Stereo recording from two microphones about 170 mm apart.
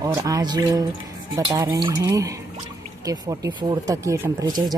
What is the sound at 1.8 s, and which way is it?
A man's voice, 25° right (ahead or behind).